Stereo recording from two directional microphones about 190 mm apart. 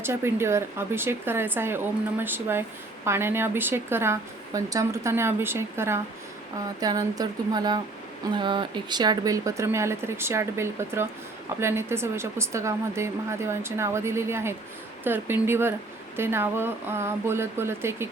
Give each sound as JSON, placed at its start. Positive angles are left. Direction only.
{"t": 0.0, "sound": "speech", "side_deg": -15}